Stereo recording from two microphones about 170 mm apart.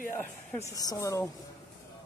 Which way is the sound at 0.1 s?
15° left (ahead or behind).